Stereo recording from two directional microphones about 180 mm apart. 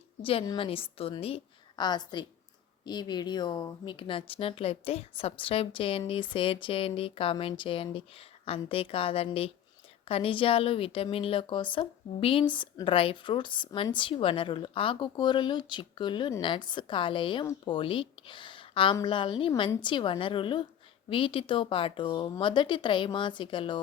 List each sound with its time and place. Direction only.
0.2 s a woman's voice: 30° left (ahead or behind)